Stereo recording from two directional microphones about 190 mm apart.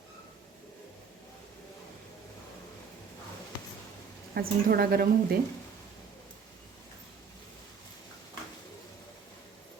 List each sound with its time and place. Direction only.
4.4 s a woman's voice: 55° right (ahead or behind)